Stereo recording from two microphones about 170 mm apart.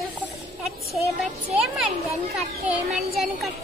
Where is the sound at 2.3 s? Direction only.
Centre (ahead or behind).